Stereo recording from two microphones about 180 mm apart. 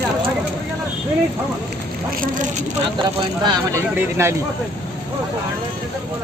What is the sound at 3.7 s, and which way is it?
Speech, 15° right (ahead or behind).